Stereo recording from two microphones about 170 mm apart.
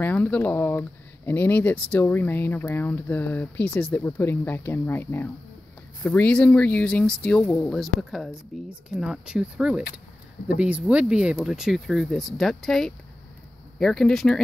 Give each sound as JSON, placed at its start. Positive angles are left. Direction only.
{"t": 0.0, "sound": "speech", "side_deg": 10}